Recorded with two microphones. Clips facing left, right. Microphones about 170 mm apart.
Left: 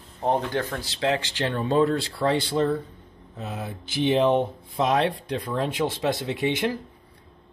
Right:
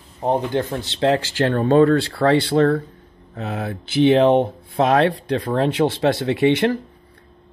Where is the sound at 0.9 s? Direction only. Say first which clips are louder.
Right 7 dB; 40° right (ahead or behind).